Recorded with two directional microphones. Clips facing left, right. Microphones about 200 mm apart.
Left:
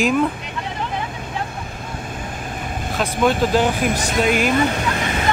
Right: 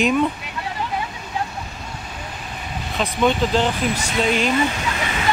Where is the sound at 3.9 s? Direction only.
40° left (ahead or behind).